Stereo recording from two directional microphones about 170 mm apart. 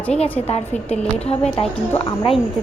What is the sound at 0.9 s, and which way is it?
Speech, 5° left (ahead or behind).